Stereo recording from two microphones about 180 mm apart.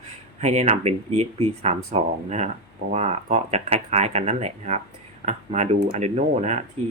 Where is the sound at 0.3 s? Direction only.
35° right (ahead or behind).